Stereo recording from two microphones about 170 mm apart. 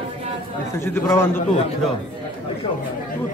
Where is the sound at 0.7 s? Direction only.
15° left (ahead or behind).